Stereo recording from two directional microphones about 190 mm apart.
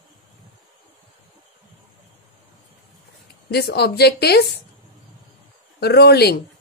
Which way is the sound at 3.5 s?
55° left (ahead or behind).